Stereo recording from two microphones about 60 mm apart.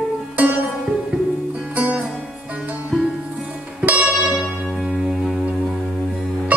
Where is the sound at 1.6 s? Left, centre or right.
Right.